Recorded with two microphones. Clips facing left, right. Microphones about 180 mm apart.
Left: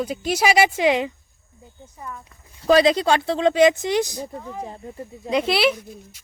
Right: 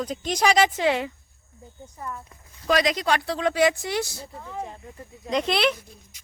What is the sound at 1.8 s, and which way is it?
Speech, centre (ahead or behind).